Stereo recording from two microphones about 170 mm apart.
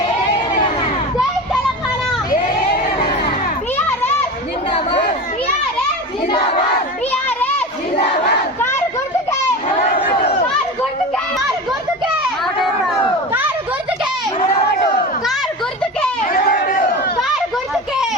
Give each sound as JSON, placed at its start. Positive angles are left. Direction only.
{"t": 2.3, "sound": "crowd", "side_deg": 60}
{"t": 4.7, "sound": "chatter", "side_deg": 35}
{"t": 6.3, "sound": "battle cry", "side_deg": 30}
{"t": 7.1, "sound": "children playing", "side_deg": 10}
{"t": 16.3, "sound": "a sound", "side_deg": 55}